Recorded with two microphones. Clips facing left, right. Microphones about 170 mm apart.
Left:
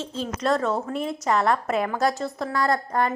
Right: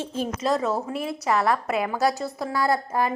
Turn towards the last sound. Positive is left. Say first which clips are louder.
# even
turn(degrees=-5)  # may be behind; listen again after turning